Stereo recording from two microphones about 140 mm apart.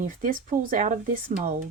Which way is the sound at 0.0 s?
70° right (ahead or behind).